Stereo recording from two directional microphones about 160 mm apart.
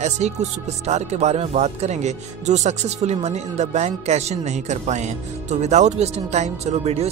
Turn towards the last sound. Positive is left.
turn(degrees=-40)  # may be behind; listen again after turning